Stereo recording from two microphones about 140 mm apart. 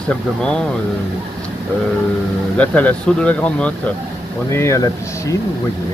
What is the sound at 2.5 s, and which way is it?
Speech, 10° left (ahead or behind).